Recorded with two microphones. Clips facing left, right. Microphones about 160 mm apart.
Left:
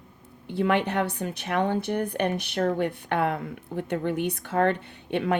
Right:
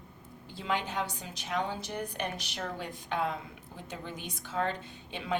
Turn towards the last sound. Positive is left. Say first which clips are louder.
# left 8 dB
turn(degrees=60)  # may be behind; listen again after turning